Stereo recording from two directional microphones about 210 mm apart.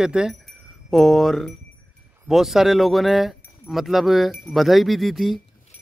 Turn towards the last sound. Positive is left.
turn(degrees=0)  # may be behind; listen again after turning